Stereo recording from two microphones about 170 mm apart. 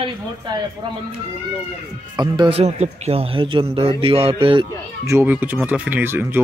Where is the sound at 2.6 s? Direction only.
40° right (ahead or behind).